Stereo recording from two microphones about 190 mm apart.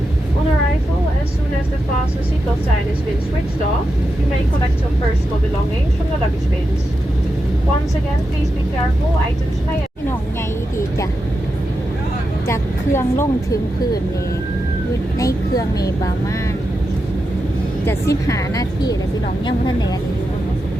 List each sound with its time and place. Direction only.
12.5 s a woman's voice: 15° left (ahead or behind)
15.2 s a woman's voice: 20° left (ahead or behind)
17.8 s a woman's voice: 15° left (ahead or behind)